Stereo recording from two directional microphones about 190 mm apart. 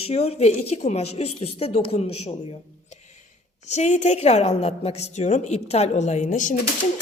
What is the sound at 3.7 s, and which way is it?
A woman's voice, 35° left (ahead or behind).